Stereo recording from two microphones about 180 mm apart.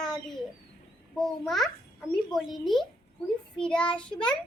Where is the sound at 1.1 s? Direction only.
Centre (ahead or behind).